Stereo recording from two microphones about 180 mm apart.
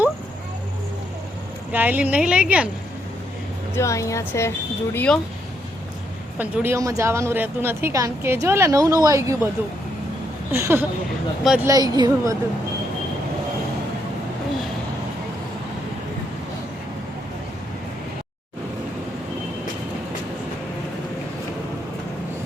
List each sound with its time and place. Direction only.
1.7 s a woman's voice: 10° right (ahead or behind)
3.8 s speech: 15° left (ahead or behind)
6.4 s a woman's voice: 10° right (ahead or behind)
10.5 s a woman's voice: 15° right (ahead or behind)
11.7 s a woman's voice: 20° right (ahead or behind)